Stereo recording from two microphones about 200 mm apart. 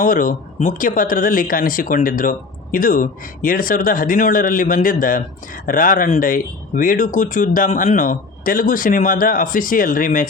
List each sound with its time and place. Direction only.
0.0 s speech: 40° left (ahead or behind)